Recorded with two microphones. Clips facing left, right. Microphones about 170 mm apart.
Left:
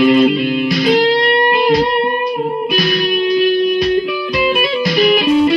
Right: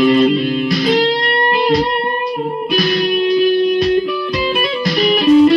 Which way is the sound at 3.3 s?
Centre (ahead or behind).